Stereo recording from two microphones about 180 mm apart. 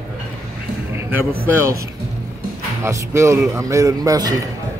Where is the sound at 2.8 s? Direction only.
15° right (ahead or behind).